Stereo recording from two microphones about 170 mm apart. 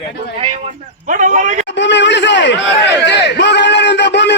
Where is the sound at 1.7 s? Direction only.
90° left.